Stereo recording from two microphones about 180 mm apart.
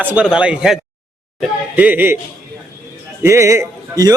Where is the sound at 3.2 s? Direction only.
15° right (ahead or behind).